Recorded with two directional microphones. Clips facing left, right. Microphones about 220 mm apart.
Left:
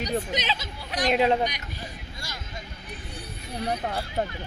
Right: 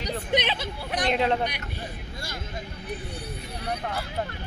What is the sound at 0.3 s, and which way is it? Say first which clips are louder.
Speech: right 4 dB; 60° right (ahead or behind).